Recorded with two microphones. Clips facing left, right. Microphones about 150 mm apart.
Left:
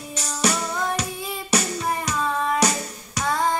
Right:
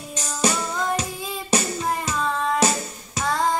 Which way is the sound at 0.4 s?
30° right (ahead or behind).